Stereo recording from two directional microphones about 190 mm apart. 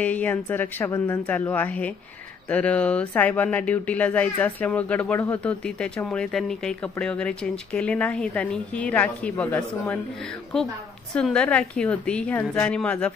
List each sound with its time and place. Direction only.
0.0 s speech: 10° left (ahead or behind)
11.1 s speech: 5° left (ahead or behind)